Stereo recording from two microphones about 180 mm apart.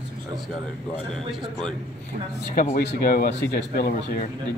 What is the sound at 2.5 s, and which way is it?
Speech, 50° left (ahead or behind).